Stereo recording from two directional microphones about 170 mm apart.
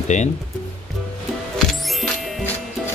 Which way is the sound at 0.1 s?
45° left (ahead or behind).